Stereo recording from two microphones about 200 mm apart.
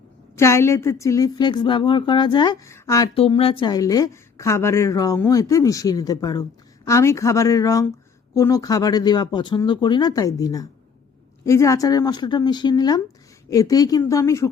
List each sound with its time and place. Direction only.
0.3 s a woman's voice: 15° left (ahead or behind)
3.2 s a woman's voice: 30° left (ahead or behind)